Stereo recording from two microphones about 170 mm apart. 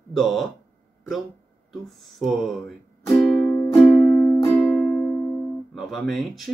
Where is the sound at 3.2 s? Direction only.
5° left (ahead or behind).